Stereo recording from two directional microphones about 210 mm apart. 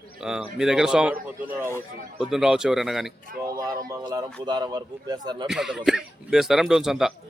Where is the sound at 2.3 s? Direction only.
5° right (ahead or behind).